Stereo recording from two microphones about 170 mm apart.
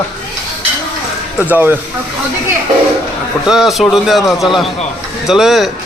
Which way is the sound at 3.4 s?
Centre (ahead or behind).